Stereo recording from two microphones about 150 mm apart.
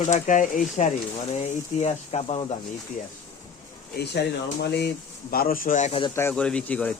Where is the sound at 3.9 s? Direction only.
90° left; by 5.9 s 55° left (ahead or behind).